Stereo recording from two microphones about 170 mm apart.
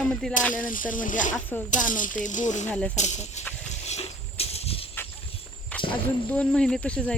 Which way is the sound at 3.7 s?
40° left (ahead or behind).